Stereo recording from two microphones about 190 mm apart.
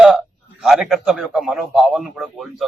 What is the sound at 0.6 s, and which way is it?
Speech, centre (ahead or behind).